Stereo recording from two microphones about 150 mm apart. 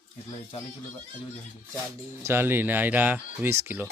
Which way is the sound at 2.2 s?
15° right (ahead or behind).